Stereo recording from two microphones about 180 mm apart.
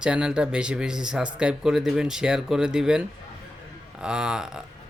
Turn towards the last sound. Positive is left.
turn(degrees=-5)  # may be behind; listen again after turning